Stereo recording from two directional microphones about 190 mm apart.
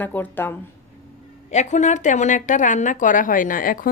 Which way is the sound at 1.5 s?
40° left (ahead or behind).